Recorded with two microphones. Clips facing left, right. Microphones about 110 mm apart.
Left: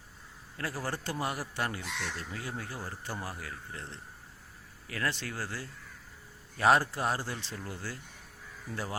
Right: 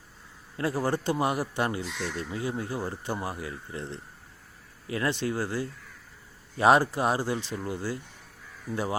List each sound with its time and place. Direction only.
0.5 s speech: 20° right (ahead or behind)